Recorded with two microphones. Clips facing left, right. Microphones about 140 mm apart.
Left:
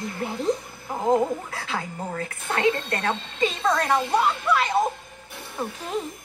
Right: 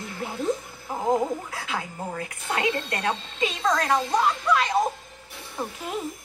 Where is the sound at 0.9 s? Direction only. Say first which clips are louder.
Left 2 dB; centre (ahead or behind).